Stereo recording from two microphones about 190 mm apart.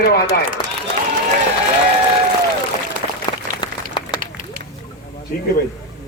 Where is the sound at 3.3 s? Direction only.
25° left (ahead or behind).